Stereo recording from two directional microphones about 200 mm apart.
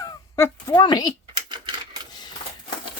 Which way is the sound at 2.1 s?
20° left (ahead or behind).